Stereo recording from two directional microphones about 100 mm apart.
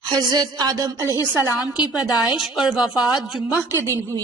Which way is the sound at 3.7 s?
25° left (ahead or behind).